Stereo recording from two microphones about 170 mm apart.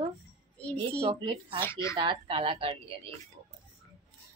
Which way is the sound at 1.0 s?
30° right (ahead or behind).